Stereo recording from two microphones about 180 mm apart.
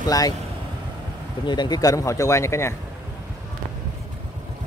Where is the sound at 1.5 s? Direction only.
25° left (ahead or behind).